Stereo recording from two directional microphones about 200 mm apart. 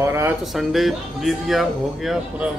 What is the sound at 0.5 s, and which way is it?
Speech, centre (ahead or behind).